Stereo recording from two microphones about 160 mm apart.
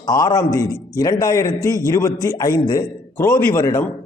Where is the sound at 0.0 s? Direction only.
25° left (ahead or behind).